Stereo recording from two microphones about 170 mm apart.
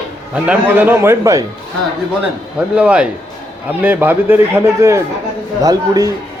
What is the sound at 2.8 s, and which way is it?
A man's voice, 5° right (ahead or behind).